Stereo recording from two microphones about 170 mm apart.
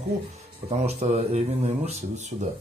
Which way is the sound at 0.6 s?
40° right (ahead or behind).